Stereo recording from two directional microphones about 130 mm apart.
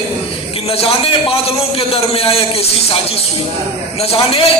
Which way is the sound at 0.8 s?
50° left (ahead or behind).